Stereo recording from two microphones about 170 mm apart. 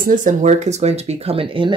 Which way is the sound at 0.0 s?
50° right (ahead or behind).